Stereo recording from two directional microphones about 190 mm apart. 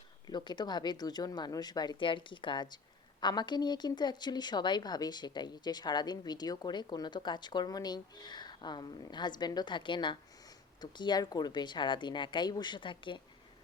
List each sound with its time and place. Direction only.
0.3 s speech: 20° left (ahead or behind)